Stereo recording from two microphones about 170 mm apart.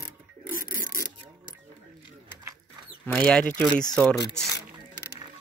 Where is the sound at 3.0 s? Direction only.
5° left (ahead or behind).